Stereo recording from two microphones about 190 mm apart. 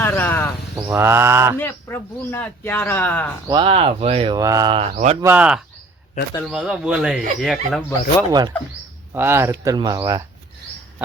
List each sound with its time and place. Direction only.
0.0 s insect: 10° left (ahead or behind)
0.9 s speech: 15° right (ahead or behind)
1.5 s speech: 10° left (ahead or behind)
3.5 s speech: 30° right (ahead or behind)
4.4 s speech: 20° right (ahead or behind); by 5.1 s 35° right (ahead or behind)
5.2 s speech: 10° right (ahead or behind)
8.3 s speech: 20° right (ahead or behind)